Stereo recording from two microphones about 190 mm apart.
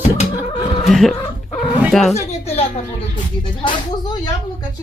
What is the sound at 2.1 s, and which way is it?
Speech, 35° left (ahead or behind).